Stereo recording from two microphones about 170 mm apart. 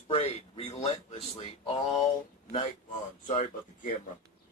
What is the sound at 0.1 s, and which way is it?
Speech, 35° left (ahead or behind).